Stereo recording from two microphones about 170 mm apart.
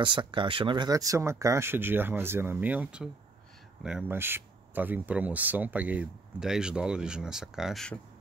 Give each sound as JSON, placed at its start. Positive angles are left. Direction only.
{"t": 0.0, "sound": "speech", "side_deg": -30}